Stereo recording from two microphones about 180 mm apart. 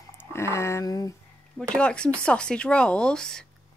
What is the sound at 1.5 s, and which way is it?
A woman's voice, 5° left (ahead or behind).